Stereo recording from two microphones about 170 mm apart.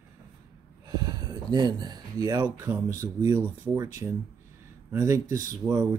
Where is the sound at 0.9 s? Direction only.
25° right (ahead or behind).